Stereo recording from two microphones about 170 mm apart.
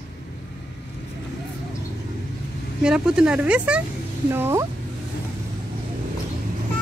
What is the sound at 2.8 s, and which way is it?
Speech, 5° right (ahead or behind).